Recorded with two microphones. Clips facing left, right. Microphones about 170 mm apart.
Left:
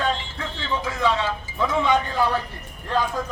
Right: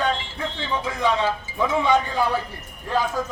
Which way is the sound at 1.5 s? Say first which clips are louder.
Right 1 dB; 10° right (ahead or behind).